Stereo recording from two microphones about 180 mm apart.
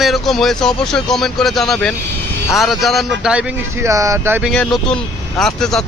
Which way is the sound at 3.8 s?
15° right (ahead or behind).